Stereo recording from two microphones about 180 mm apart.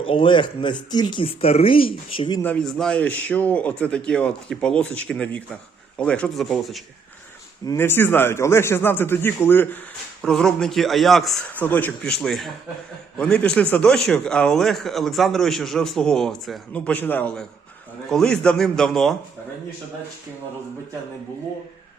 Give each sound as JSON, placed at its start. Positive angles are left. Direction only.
{"t": 0.0, "sound": "speech", "side_deg": 30}
{"t": 2.4, "sound": "a man's voice", "side_deg": 5}
{"t": 7.6, "sound": "a man's voice", "side_deg": 15}